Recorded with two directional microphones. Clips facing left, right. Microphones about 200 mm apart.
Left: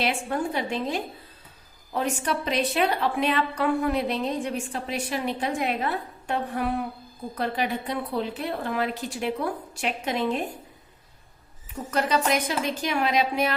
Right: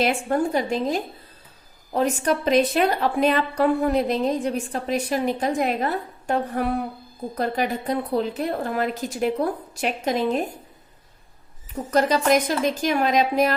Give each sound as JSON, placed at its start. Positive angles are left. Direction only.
{"t": 0.0, "sound": "a woman's voice", "side_deg": -45}
{"t": 11.9, "sound": "a woman's voice", "side_deg": -40}